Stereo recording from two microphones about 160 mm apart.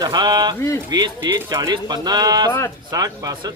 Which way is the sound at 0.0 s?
25° right (ahead or behind).